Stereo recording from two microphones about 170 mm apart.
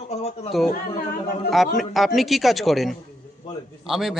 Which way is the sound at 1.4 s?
Centre (ahead or behind).